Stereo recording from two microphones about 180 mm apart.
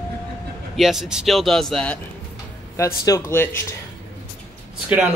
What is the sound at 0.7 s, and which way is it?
Speech, centre (ahead or behind).